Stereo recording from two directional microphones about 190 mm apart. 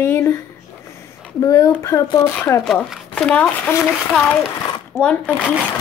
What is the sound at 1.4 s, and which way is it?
A child's voice, 20° left (ahead or behind).